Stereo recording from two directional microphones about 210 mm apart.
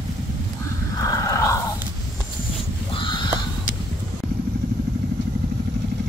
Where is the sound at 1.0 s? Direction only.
15° left (ahead or behind).